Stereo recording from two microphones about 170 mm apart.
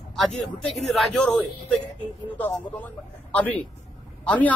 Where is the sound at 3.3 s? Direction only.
10° left (ahead or behind).